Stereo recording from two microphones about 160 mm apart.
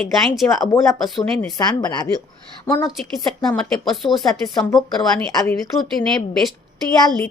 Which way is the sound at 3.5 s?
5° left (ahead or behind).